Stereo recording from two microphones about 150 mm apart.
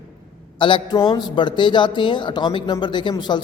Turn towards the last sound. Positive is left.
turn(degrees=30)  # may be behind; listen again after turning